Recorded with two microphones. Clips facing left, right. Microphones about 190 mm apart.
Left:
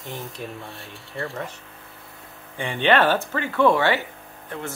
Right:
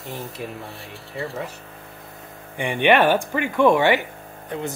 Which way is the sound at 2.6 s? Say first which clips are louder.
Right 2 dB; 15° right (ahead or behind).